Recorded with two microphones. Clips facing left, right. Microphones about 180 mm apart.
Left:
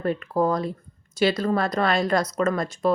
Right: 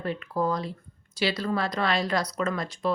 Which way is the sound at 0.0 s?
50° left (ahead or behind).